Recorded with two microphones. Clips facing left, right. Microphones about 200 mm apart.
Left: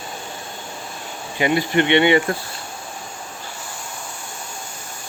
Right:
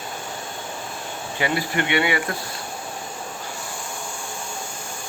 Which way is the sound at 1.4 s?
20° left (ahead or behind).